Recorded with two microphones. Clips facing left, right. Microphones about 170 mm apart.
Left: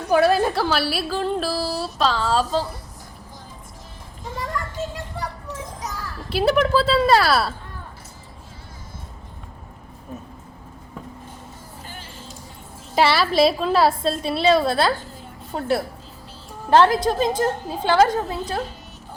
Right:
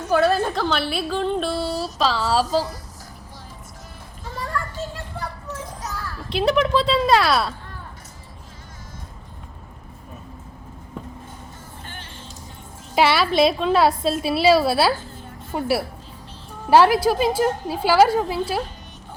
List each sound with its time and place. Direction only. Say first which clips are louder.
0.1 s a woman's voice: left 2 dB; 15° left (ahead or behind)
4.5 s children playing: even; 15° left (ahead or behind)
6.3 s a woman's voice: left 1 dB; 5° left (ahead or behind)
12.9 s a woman's voice: even; centre (ahead or behind)